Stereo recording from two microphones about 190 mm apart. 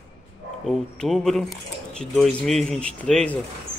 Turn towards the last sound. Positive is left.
turn(degrees=5)  # may be behind; listen again after turning